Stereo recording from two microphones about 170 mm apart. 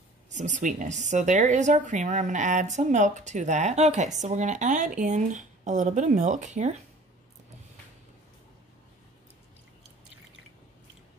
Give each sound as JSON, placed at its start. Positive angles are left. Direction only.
{"t": 0.3, "sound": "a woman's voice", "side_deg": -45}